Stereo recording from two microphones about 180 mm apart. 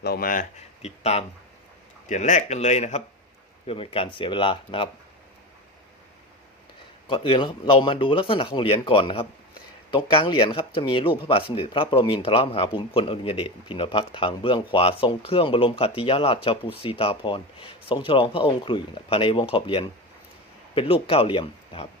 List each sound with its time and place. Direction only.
0.0 s speech: 55° left (ahead or behind)
0.8 s speech: 35° left (ahead or behind)
7.1 s speech: 30° left (ahead or behind)